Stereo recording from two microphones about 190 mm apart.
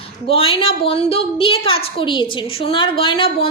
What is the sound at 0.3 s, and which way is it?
A woman's voice, 30° left (ahead or behind).